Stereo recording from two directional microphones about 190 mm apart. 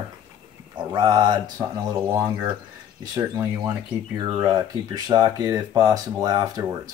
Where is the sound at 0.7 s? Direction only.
20° right (ahead or behind).